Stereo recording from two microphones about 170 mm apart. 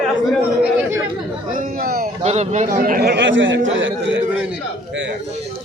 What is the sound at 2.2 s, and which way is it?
A man's voice, 40° right (ahead or behind).